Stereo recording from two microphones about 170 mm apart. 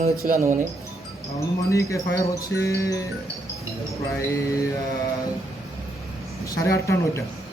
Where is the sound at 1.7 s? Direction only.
20° left (ahead or behind).